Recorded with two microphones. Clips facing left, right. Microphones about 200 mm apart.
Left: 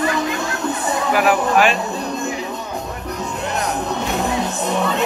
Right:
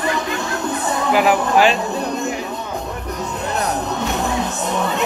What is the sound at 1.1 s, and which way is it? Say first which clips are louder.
Speech: right 1 dB; 20° right (ahead or behind).